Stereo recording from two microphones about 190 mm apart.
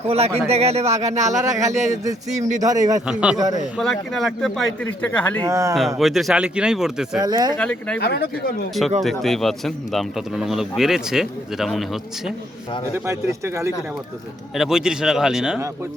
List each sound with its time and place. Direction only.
0.0 s a man's voice: 35° right (ahead or behind)
1.4 s a man's voice: 15° right (ahead or behind)
3.1 s speech: 5° right (ahead or behind)
3.3 s a man's voice: 20° right (ahead or behind)
3.8 s speech: centre (ahead or behind)
5.5 s a man's voice: 15° right (ahead or behind)
6.0 s speech: centre (ahead or behind)
7.2 s a man's voice: 20° right (ahead or behind)
7.6 s speech: 5° left (ahead or behind)
7.9 s speech: 55° left (ahead or behind)
9.0 s speech: centre (ahead or behind)
13.1 s a man's voice: 15° right (ahead or behind)
14.5 s speech: centre (ahead or behind)